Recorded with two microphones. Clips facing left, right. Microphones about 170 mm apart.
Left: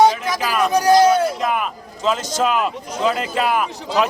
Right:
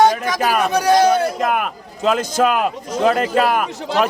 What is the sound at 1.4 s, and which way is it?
A man's voice, 55° right (ahead or behind).